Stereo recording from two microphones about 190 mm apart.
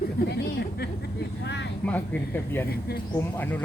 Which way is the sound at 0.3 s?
60° left (ahead or behind).